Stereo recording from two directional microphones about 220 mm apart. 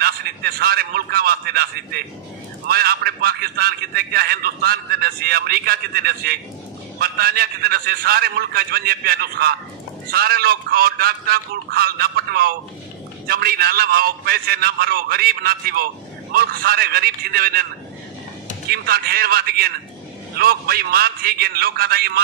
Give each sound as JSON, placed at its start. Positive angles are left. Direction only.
{"t": 0.0, "sound": "a man's voice", "side_deg": -45}
{"t": 18.7, "sound": "a man's voice", "side_deg": -45}